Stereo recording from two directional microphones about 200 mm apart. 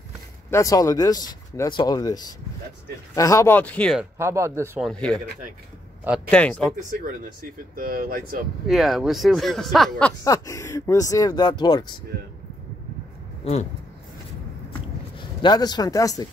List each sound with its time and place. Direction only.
0.5 s speech: 15° left (ahead or behind)
4.0 s speech: 15° right (ahead or behind)
4.8 s speech: 5° left (ahead or behind)
6.3 s speech: 5° left (ahead or behind)
7.7 s speech: 45° right (ahead or behind)
8.6 s speech: centre (ahead or behind)
10.2 s speech: 15° left (ahead or behind)
13.4 s speech: 35° left (ahead or behind)
15.1 s speech: 20° left (ahead or behind)